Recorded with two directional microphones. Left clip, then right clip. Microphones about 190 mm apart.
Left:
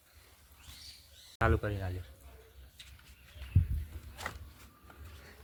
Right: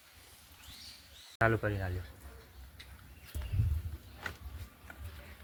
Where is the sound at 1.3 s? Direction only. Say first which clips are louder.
Right 1 dB; 10° left (ahead or behind).